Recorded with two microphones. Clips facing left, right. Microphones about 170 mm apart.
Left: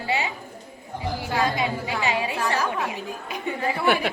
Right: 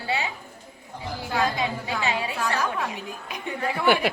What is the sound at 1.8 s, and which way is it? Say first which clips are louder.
Speech: left 2 dB; 10° left (ahead or behind).